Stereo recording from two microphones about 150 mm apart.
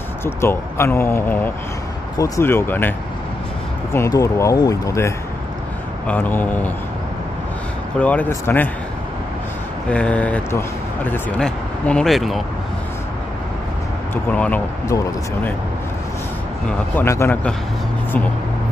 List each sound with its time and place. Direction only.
0.2 s speech: 15° left (ahead or behind)
3.9 s speech: 20° left (ahead or behind)
8.0 s speech: 10° left (ahead or behind)
9.8 s speech: 10° left (ahead or behind)
14.1 s speech: 10° left (ahead or behind)
16.9 s speech: 15° left (ahead or behind)